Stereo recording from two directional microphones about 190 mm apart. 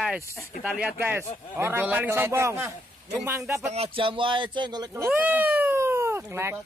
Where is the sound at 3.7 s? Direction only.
30° right (ahead or behind).